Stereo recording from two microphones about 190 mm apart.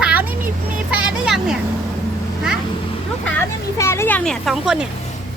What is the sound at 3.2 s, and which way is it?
Speech, 15° left (ahead or behind).